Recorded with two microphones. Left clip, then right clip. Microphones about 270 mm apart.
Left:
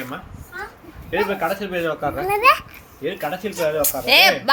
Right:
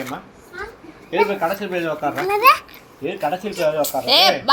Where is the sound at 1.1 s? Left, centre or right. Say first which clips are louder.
Right 2 dB; centre.